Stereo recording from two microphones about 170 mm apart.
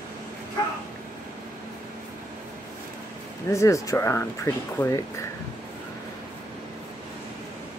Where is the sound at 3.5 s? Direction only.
20° left (ahead or behind).